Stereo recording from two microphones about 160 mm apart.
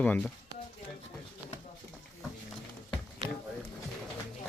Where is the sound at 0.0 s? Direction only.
10° left (ahead or behind).